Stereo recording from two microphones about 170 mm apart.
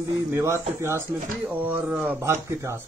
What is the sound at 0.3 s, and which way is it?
Speech, 15° right (ahead or behind).